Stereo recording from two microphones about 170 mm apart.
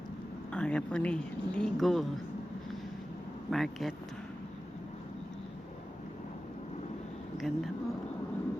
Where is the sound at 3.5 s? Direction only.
Centre (ahead or behind).